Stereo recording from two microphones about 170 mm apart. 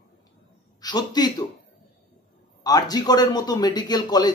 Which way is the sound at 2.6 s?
20° left (ahead or behind).